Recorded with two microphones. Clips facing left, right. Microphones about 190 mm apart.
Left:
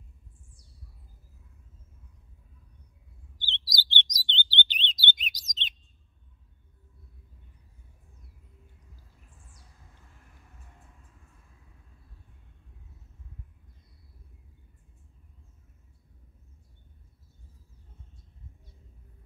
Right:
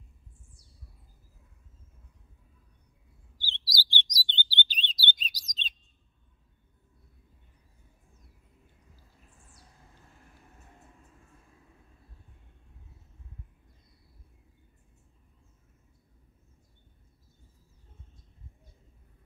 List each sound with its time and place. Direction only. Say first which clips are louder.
3.3 s chirp: even; 20° left (ahead or behind)